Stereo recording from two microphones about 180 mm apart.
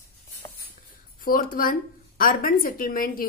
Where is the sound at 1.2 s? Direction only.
50° left (ahead or behind).